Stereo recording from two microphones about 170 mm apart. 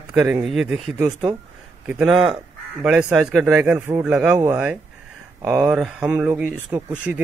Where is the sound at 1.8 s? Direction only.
10° right (ahead or behind).